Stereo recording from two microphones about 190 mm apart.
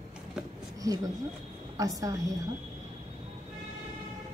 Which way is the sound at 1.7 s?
20° right (ahead or behind).